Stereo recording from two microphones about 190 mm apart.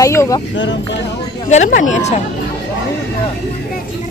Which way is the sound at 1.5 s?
40° left (ahead or behind).